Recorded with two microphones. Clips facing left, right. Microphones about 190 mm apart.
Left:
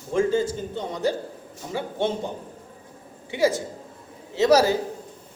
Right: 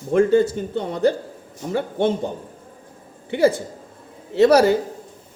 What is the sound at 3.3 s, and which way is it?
A man's voice, 55° right (ahead or behind).